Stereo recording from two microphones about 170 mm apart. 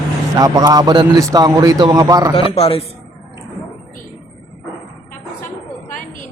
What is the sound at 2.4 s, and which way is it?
Speech, 35° left (ahead or behind).